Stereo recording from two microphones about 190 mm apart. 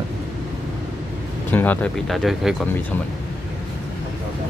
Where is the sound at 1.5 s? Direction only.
10° left (ahead or behind).